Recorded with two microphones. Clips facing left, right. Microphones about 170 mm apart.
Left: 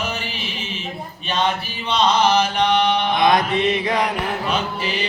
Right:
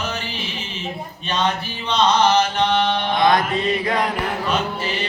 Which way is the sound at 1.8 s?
10° left (ahead or behind).